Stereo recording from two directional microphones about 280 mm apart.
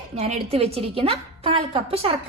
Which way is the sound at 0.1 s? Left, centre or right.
Right.